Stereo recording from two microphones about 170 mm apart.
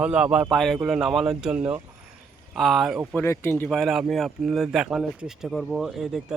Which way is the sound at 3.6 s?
Centre (ahead or behind).